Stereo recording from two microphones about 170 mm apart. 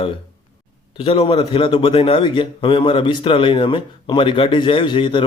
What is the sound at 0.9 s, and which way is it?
A man's voice, 35° left (ahead or behind).